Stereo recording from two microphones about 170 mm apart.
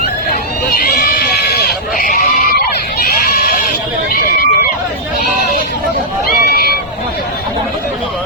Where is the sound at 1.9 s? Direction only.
55° left (ahead or behind).